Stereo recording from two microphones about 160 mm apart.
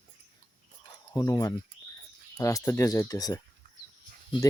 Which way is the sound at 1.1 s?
25° left (ahead or behind).